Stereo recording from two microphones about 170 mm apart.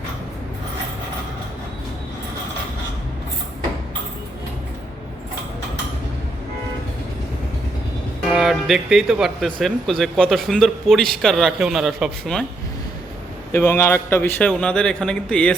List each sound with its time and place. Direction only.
8.3 s speech: centre (ahead or behind)
13.5 s a man's voice: 15° left (ahead or behind)